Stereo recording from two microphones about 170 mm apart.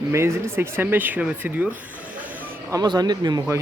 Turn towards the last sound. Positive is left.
turn(degrees=-25)  # may be behind; listen again after turning